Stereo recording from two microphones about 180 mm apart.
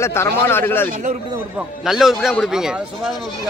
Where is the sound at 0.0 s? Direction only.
15° left (ahead or behind).